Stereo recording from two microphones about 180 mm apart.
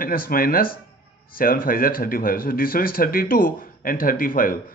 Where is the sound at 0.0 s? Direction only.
55° left (ahead or behind).